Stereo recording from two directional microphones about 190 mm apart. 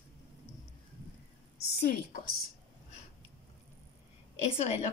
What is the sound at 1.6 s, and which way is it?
Speech, 55° left (ahead or behind).